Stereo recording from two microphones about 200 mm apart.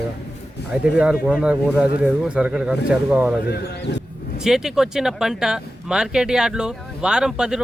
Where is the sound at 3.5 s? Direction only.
60° left (ahead or behind).